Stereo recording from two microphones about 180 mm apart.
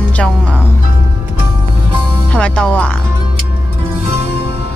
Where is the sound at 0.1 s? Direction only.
5° left (ahead or behind).